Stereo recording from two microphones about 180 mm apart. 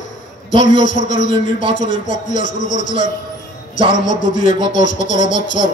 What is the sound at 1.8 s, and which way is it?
Speech, 45° left (ahead or behind).